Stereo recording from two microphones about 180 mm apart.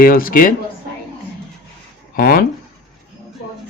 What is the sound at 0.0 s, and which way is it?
Speech, 55° left (ahead or behind).